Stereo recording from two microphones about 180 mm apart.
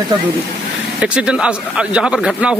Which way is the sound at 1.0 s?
5° right (ahead or behind).